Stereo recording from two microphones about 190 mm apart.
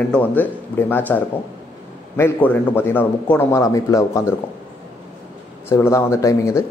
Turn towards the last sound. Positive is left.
turn(degrees=15)  # may be behind; listen again after turning